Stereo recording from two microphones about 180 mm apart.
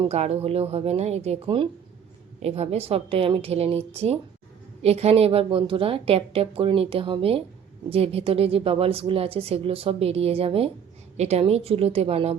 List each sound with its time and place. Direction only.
0.0 s a woman's voice: 35° right (ahead or behind)